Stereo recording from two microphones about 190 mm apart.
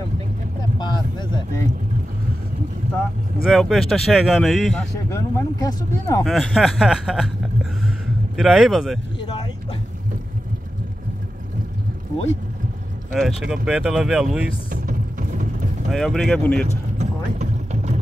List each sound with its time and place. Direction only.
0.7 s a sound: 20° left (ahead or behind)
3.4 s speech: centre (ahead or behind)
5.1 s speech: 15° left (ahead or behind)
6.2 s speech: centre (ahead or behind)
8.4 s speech: centre (ahead or behind)
9.2 s vehicle: 25° left (ahead or behind)
13.1 s speech: centre (ahead or behind)
14.7 s music: 45° right (ahead or behind)
15.9 s speech: centre (ahead or behind)
17.0 s a sound: 35° right (ahead or behind)